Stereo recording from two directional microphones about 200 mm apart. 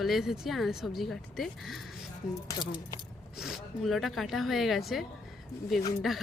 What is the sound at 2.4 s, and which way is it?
Speech, 20° left (ahead or behind).